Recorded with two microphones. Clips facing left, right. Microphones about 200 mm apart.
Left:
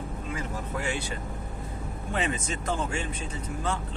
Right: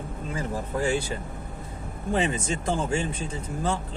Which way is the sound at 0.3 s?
35° right (ahead or behind).